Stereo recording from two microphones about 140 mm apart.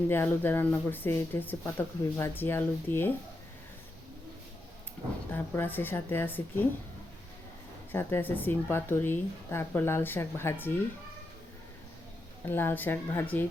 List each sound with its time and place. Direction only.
0.1 s speech: 15° left (ahead or behind)
5.3 s speech: 15° left (ahead or behind)
7.9 s speech: 15° left (ahead or behind)
12.5 s speech: 15° left (ahead or behind)